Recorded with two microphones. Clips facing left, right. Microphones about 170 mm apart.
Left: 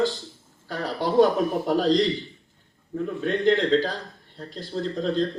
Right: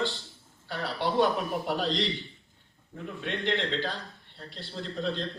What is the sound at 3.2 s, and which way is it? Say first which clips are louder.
A man's voice: left 9 dB; 40° left (ahead or behind).